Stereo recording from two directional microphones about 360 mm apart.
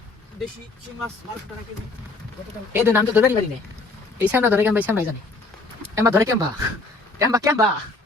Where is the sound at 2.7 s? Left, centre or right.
Centre.